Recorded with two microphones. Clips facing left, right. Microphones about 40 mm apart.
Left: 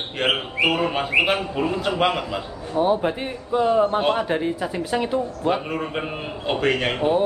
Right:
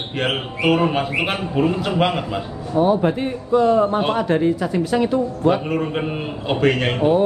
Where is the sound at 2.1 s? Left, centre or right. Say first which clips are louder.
Right 3 dB; right.